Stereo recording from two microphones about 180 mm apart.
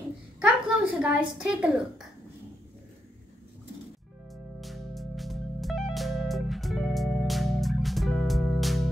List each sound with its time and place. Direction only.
0.4 s a woman's voice: 5° right (ahead or behind)
4.3 s music: centre (ahead or behind)